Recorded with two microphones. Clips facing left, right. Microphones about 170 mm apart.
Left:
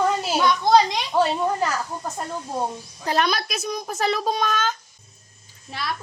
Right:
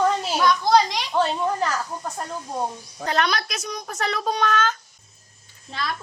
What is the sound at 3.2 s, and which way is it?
Speech, 25° left (ahead or behind).